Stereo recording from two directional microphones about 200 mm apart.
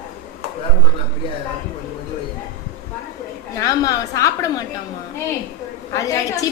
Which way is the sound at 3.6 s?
15° left (ahead or behind).